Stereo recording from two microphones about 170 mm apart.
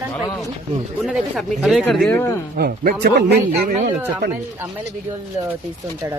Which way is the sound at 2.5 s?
65° right (ahead or behind).